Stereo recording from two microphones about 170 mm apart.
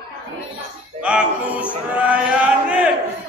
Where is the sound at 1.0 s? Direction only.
5° right (ahead or behind).